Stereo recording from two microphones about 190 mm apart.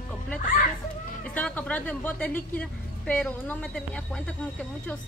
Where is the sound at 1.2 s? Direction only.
10° left (ahead or behind).